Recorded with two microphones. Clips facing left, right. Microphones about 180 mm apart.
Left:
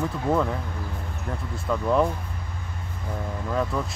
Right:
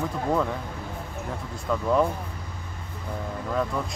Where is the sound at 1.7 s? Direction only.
5° left (ahead or behind).